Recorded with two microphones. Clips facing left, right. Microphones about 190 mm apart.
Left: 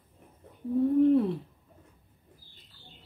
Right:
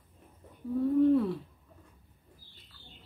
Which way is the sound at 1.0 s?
25° left (ahead or behind).